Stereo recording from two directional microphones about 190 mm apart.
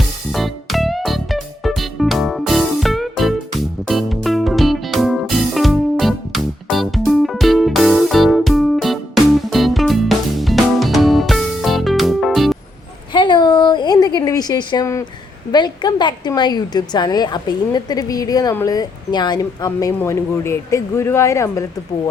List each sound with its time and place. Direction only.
0.3 s music: centre (ahead or behind)
13.1 s a sound: 25° left (ahead or behind)
15.5 s a woman's voice: 20° left (ahead or behind)